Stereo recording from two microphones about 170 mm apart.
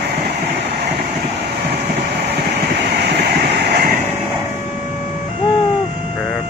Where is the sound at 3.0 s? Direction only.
80° right.